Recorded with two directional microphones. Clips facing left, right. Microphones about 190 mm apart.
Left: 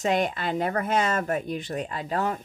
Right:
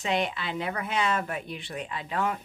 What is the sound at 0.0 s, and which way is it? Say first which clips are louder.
Speech: left 4 dB; 45° left (ahead or behind).